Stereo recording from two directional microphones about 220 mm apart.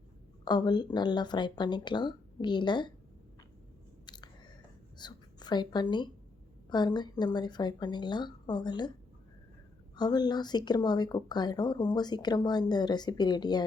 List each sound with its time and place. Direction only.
0.4 s speech: 20° left (ahead or behind)
4.0 s biting: 20° left (ahead or behind)
4.9 s speech: 20° left (ahead or behind)
9.9 s speech: 20° left (ahead or behind)